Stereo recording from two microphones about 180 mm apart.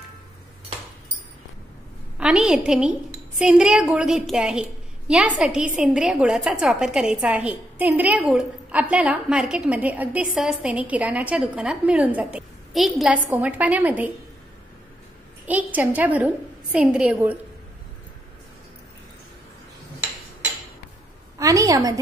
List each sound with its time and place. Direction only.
2.1 s a woman's voice: 5° right (ahead or behind)
15.4 s a woman's voice: 10° right (ahead or behind)
21.4 s a woman's voice: 20° right (ahead or behind)